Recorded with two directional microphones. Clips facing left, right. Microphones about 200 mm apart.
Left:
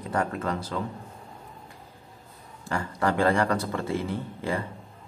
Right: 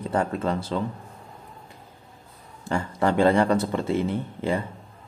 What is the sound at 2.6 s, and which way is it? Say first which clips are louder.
Speech: right 3 dB; 25° right (ahead or behind).